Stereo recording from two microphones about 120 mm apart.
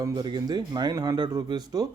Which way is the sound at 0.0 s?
35° right (ahead or behind).